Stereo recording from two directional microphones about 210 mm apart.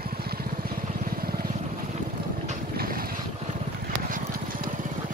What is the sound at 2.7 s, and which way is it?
Boat, 45° right (ahead or behind).